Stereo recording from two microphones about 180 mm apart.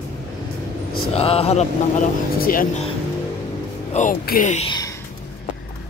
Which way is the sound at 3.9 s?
45° left (ahead or behind).